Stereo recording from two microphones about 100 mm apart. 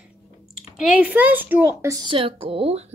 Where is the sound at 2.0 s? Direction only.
65° right (ahead or behind).